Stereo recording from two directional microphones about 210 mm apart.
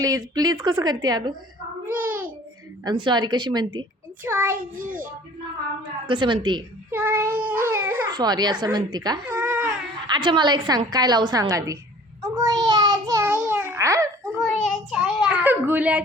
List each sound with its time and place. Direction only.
0.0 s a woman's voice: 15° right (ahead or behind)
1.9 s child singing: 10° right (ahead or behind)
2.8 s a woman's voice: 20° right (ahead or behind)
4.2 s a child's voice: 10° right (ahead or behind)
4.5 s child singing: 40° right (ahead or behind)
6.1 s a woman's voice: 25° right (ahead or behind)
6.9 s child singing: 10° right (ahead or behind)
8.1 s a woman's voice: 20° right (ahead or behind)
9.3 s baby cry: 5° right (ahead or behind)
10.1 s a woman's voice: 20° right (ahead or behind)
12.4 s child singing: 20° right (ahead or behind)
14.4 s child singing: centre (ahead or behind)